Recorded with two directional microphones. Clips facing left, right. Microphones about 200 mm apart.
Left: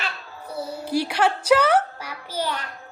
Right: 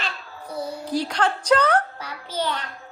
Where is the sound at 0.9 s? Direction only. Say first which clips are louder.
Left 2 dB; 10° left (ahead or behind).